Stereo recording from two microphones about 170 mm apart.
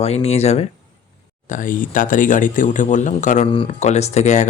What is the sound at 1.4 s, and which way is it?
Speech, 50° left (ahead or behind).